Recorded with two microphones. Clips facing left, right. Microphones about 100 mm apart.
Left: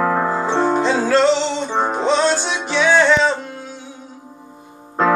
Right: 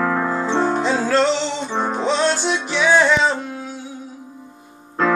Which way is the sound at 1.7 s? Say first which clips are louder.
Left 2 dB; 25° left (ahead or behind).